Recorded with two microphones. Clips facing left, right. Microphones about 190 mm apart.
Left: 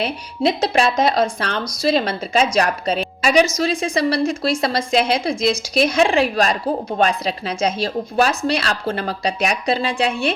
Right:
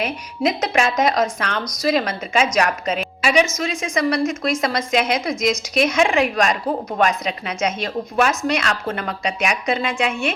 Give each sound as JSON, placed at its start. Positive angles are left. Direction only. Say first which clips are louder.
{"t": 0.0, "sound": "a woman's voice", "louder": "left 2 dB", "side_deg": 30}